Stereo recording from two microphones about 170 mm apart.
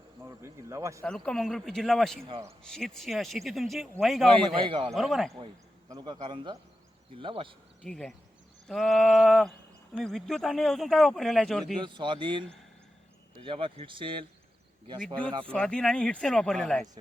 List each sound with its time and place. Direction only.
0.2 s speech: 15° right (ahead or behind)
1.0 s speech: 5° left (ahead or behind)
4.5 s a man's voice: 30° right (ahead or behind)
4.9 s speech: centre (ahead or behind)
5.9 s a man's voice: 25° right (ahead or behind)
7.9 s speech: 5° left (ahead or behind)
11.8 s a man's voice: 25° right (ahead or behind)
15.4 s speech: 5° left (ahead or behind)